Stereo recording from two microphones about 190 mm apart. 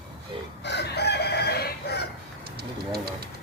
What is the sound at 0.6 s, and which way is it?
Chicken, 65° left (ahead or behind).